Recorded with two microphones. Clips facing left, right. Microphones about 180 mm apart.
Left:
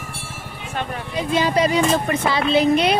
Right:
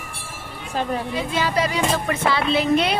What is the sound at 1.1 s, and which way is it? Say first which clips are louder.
Speech: left 7 dB; 20° left (ahead or behind).